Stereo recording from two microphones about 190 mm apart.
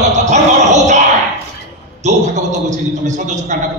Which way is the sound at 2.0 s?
40° right (ahead or behind).